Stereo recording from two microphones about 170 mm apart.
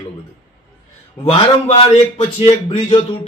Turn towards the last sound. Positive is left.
turn(degrees=35)  # may be behind; listen again after turning